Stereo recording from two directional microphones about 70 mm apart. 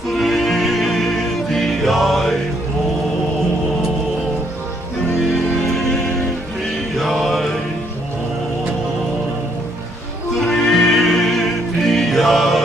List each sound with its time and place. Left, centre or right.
0.2 s music: centre
7.0 s music: centre
10.4 s music: centre